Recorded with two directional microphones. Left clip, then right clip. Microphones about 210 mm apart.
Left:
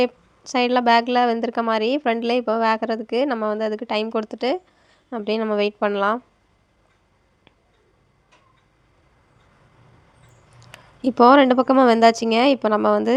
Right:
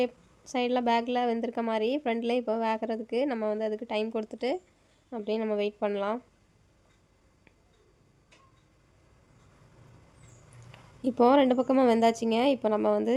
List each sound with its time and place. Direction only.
0.0 s speech: 15° left (ahead or behind)
10.6 s speech: 15° left (ahead or behind)